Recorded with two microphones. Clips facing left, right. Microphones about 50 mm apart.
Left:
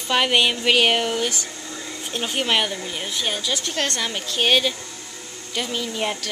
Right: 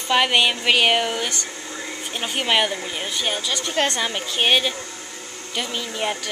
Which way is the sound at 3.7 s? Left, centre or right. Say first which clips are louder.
Right 3 dB; centre.